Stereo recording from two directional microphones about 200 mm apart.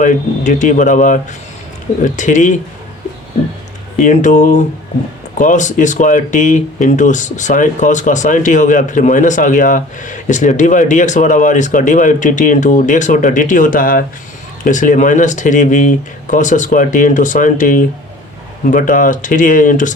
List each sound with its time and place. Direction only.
0.0 s speech: 40° left (ahead or behind)
3.9 s speech: 40° left (ahead or behind)